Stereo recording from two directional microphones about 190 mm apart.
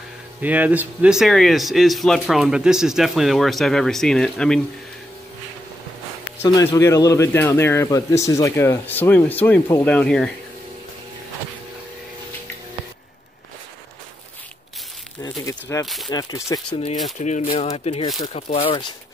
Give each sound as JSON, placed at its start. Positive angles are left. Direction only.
{"t": 0.4, "sound": "speech", "side_deg": -10}
{"t": 6.4, "sound": "speech", "side_deg": 15}
{"t": 15.2, "sound": "crumpling", "side_deg": 15}
{"t": 15.8, "sound": "speech", "side_deg": 0}
{"t": 16.1, "sound": "speech", "side_deg": 20}
{"t": 17.2, "sound": "speech", "side_deg": 40}